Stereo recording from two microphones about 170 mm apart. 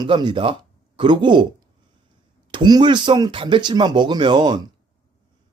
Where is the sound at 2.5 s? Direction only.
25° right (ahead or behind).